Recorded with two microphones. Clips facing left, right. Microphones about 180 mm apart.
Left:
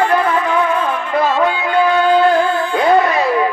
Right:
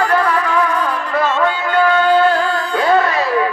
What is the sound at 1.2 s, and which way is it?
Music, 15° left (ahead or behind).